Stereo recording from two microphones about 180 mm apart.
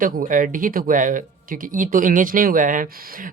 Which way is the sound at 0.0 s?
50° right (ahead or behind).